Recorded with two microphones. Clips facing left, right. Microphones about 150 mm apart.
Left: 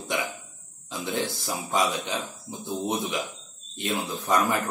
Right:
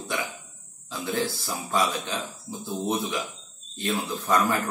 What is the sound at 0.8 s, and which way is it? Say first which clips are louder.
Speech: right 1 dB; 20° left (ahead or behind).